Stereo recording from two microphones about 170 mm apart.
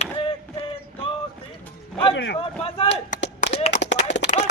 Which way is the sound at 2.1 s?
90° left.